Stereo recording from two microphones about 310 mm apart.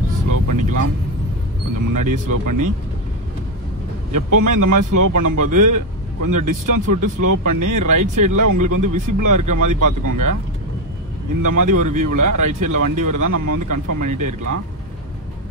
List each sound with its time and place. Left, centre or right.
0.3 s vehicle: right
1.9 s speech: right
4.1 s speech: right
11.4 s speech: right